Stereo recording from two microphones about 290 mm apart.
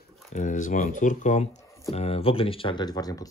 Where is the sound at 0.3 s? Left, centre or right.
Left.